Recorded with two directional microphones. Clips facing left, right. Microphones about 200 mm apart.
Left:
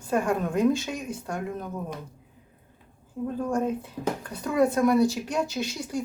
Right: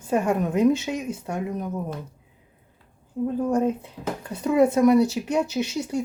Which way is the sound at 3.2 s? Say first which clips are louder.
Right 4 dB; 20° right (ahead or behind).